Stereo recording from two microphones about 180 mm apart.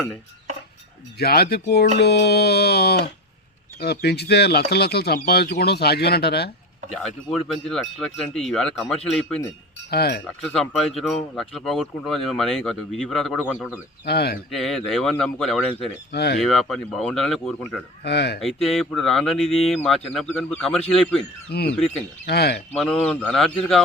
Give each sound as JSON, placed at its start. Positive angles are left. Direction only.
{"t": 1.2, "sound": "speech", "side_deg": 60}
{"t": 6.9, "sound": "speech", "side_deg": 0}
{"t": 9.9, "sound": "speech", "side_deg": 60}
{"t": 10.5, "sound": "speech", "side_deg": 0}
{"t": 14.0, "sound": "speech", "side_deg": 65}
{"t": 14.5, "sound": "speech", "side_deg": 0}
{"t": 16.1, "sound": "speech", "side_deg": 65}
{"t": 16.4, "sound": "speech", "side_deg": 0}
{"t": 18.0, "sound": "speech", "side_deg": 65}
{"t": 18.3, "sound": "speech", "side_deg": 0}
{"t": 21.5, "sound": "speech", "side_deg": 60}
{"t": 22.7, "sound": "speech", "side_deg": 0}